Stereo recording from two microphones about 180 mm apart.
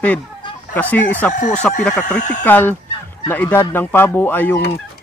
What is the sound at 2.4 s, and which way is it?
Speech, 10° left (ahead or behind).